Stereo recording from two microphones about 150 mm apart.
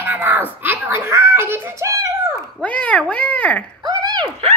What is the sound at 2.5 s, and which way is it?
Speech, 10° left (ahead or behind).